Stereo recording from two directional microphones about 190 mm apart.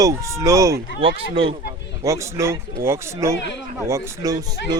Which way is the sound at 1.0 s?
30° right (ahead or behind).